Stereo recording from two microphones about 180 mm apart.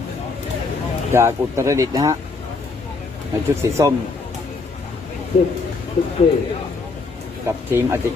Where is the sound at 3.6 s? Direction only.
15° right (ahead or behind).